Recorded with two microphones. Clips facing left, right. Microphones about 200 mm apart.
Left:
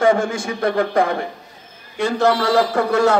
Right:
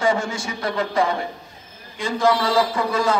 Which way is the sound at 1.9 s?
65° left (ahead or behind).